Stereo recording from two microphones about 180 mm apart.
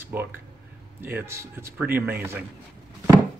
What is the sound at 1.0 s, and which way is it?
Speech, 15° right (ahead or behind).